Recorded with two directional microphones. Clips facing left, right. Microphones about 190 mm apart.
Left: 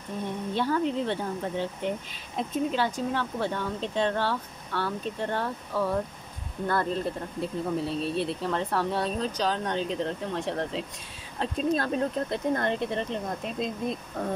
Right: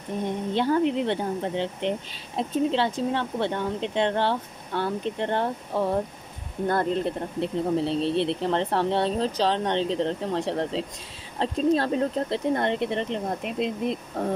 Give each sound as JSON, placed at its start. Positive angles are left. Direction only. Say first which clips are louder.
{"t": 0.5, "sound": "speech", "louder": "right 4 dB", "side_deg": -20}